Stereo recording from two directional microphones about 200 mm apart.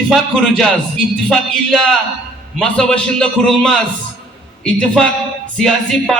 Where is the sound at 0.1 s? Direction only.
Centre (ahead or behind).